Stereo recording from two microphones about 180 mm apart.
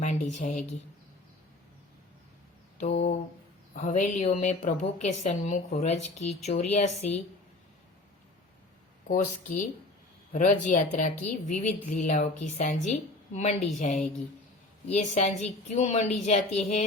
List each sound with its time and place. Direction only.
0.0 s a woman's voice: 40° left (ahead or behind)
2.7 s mantra: 35° left (ahead or behind)
3.8 s a woman's voice: 45° left (ahead or behind)
9.0 s a woman's voice: 45° left (ahead or behind)